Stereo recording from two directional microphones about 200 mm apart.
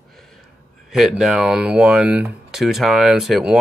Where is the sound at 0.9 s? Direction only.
Centre (ahead or behind).